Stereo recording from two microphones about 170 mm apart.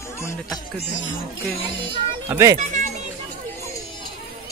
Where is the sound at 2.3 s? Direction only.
20° right (ahead or behind).